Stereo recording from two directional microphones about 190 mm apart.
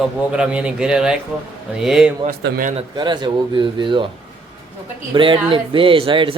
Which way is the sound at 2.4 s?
45° right (ahead or behind).